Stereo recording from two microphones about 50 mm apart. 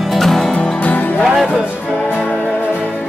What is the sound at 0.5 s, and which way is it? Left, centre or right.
Music, left.